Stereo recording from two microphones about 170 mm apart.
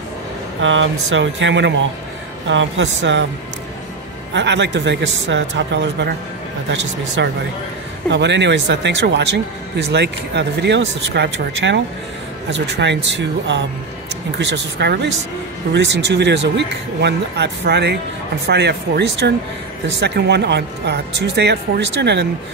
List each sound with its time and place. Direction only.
1.1 s speech: 90° right
4.3 s speech: 90° right